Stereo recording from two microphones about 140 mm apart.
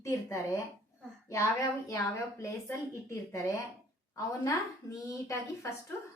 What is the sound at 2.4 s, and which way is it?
A woman's voice, 20° left (ahead or behind).